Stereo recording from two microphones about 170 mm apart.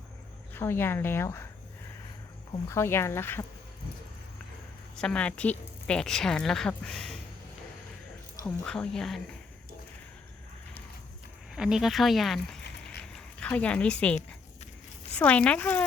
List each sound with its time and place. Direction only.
0.5 s speech: 15° left (ahead or behind)
2.6 s speech: 15° left (ahead or behind)
4.9 s a woman's voice: 5° left (ahead or behind)
8.4 s a woman's voice: 5° left (ahead or behind)
11.5 s a woman's voice: 5° right (ahead or behind)